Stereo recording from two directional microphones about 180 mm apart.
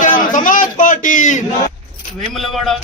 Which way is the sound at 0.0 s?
45° left (ahead or behind).